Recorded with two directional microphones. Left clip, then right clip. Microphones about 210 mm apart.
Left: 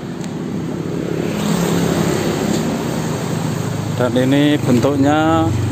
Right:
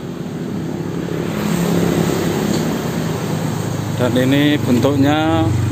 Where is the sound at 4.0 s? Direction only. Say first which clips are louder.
Left 1 dB; 15° left (ahead or behind).